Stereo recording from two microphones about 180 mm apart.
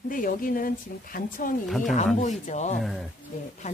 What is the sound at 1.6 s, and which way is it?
Speech, centre (ahead or behind).